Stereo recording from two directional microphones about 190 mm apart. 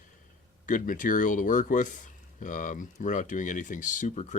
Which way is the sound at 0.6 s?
45° left (ahead or behind).